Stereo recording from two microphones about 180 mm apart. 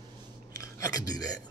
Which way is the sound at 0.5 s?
15° left (ahead or behind).